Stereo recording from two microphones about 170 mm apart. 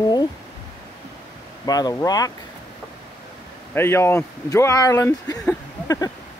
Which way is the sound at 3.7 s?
15° left (ahead or behind).